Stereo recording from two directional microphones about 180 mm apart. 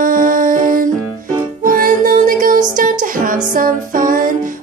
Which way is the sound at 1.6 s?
50° right (ahead or behind).